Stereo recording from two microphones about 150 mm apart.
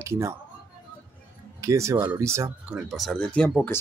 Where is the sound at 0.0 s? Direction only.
20° right (ahead or behind).